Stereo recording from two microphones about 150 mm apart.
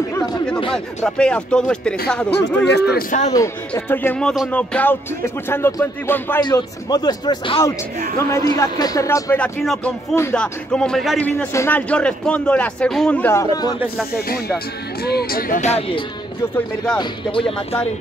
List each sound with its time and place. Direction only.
0.7 s speech: 5° left (ahead or behind)
2.7 s speech: 80° left
3.3 s music: 15° left (ahead or behind)
6.4 s speech: 25° left (ahead or behind)
8.3 s speech: 20° left (ahead or behind)
9.4 s speech: 5° left (ahead or behind)
11.2 s music: 15° left (ahead or behind)
13.7 s speech: 5° right (ahead or behind)
15.0 s speech: 85° left
15.6 s speech: 45° left (ahead or behind)
16.9 s speech: 30° left (ahead or behind)